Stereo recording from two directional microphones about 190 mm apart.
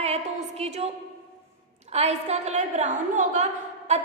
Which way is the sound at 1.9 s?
35° right (ahead or behind).